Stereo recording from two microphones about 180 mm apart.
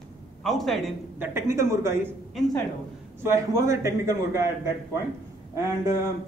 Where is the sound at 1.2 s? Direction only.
15° right (ahead or behind).